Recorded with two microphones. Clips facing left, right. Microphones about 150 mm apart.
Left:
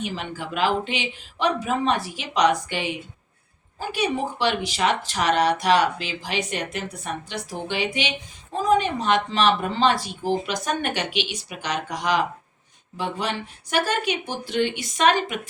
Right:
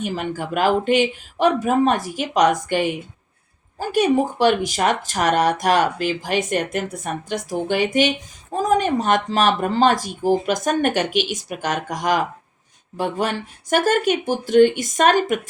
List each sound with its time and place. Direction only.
0.0 s speech: 50° right (ahead or behind)